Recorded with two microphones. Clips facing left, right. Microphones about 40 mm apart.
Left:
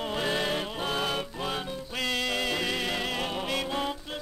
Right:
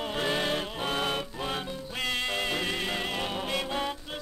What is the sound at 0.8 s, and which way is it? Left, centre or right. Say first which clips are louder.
Music: even; right.